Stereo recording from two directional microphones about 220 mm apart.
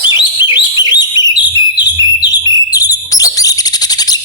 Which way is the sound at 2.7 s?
15° left (ahead or behind).